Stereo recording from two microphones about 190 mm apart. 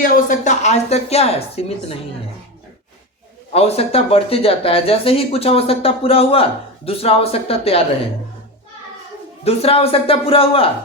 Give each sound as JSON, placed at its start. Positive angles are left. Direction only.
{"t": 0.0, "sound": "speech", "side_deg": 40}
{"t": 3.5, "sound": "speech", "side_deg": 30}
{"t": 9.4, "sound": "a man's voice", "side_deg": 30}